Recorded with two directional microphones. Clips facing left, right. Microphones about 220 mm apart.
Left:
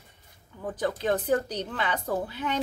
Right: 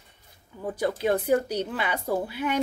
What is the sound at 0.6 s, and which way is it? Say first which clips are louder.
A woman's voice: right 2 dB; 10° right (ahead or behind).